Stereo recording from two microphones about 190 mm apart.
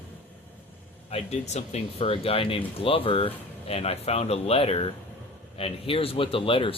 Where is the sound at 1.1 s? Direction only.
35° left (ahead or behind).